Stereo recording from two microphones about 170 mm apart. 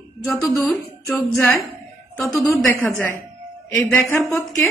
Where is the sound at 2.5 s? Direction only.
15° left (ahead or behind).